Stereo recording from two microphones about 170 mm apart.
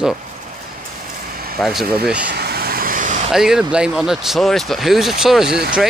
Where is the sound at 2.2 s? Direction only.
70° right (ahead or behind); by 3.2 s 50° right (ahead or behind).